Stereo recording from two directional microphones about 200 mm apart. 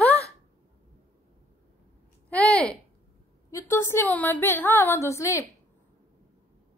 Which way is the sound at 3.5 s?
15° left (ahead or behind).